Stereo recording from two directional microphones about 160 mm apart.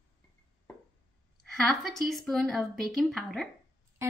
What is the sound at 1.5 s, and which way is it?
Speech, centre (ahead or behind).